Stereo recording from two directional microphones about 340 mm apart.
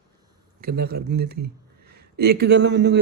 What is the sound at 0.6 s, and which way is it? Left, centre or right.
A man's voice, right.